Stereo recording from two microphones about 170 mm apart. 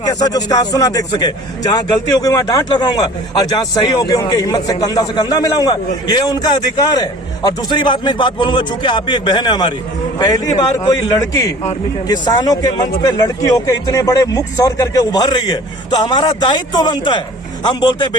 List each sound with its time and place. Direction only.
0.0 s a man's voice: 20° left (ahead or behind)